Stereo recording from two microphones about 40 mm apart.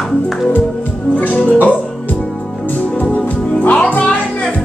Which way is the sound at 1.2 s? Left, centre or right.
Left.